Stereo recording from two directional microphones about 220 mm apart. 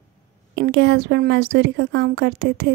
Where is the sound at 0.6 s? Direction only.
50° right (ahead or behind).